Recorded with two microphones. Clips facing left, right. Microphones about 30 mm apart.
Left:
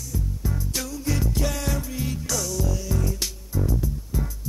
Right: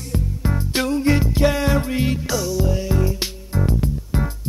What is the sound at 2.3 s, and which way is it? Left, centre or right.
Music, right.